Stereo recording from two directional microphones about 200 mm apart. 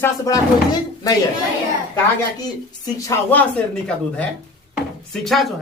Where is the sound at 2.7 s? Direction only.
15° left (ahead or behind); by 5.5 s centre (ahead or behind).